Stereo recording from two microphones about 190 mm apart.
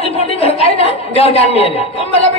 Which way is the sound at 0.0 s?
30° left (ahead or behind).